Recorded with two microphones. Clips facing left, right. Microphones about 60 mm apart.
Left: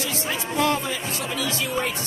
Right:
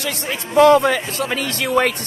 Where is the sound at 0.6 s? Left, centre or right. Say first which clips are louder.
Right 13 dB; right.